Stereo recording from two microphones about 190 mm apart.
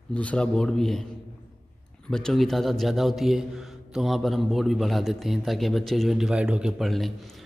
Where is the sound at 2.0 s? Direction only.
5° left (ahead or behind).